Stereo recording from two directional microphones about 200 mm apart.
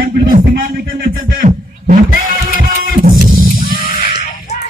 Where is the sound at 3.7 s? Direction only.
50° left (ahead or behind).